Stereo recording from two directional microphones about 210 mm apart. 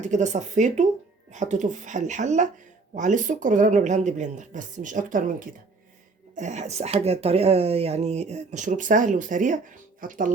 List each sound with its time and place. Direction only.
0.0 s speech: 35° right (ahead or behind)